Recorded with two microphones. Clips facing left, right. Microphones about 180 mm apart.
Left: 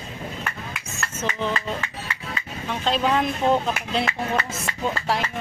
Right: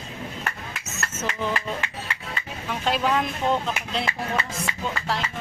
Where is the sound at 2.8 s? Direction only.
10° right (ahead or behind).